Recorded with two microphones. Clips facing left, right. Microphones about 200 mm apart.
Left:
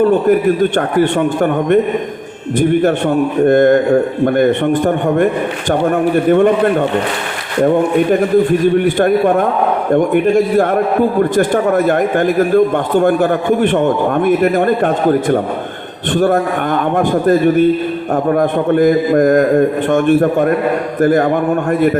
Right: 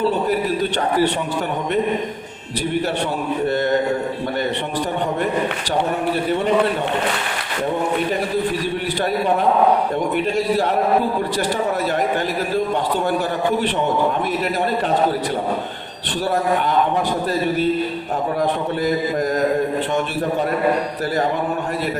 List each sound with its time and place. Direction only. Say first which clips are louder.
0.0 s a man's voice: left 9 dB; 50° left (ahead or behind)
8.1 s a man's voice: left 10 dB; 50° left (ahead or behind)